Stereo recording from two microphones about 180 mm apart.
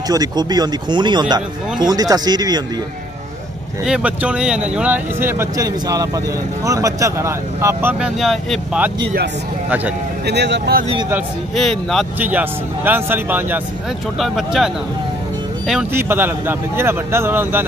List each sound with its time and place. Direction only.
0.1 s speech: 20° right (ahead or behind)
3.8 s speech: 5° right (ahead or behind)
8.2 s speech: centre (ahead or behind)
9.0 s speech: 75° right (ahead or behind)
11.5 s speech: centre (ahead or behind)
12.2 s speech: 10° right (ahead or behind)
15.9 s speech: 10° right (ahead or behind)